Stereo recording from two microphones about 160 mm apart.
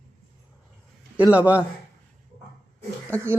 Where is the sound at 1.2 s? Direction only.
10° right (ahead or behind).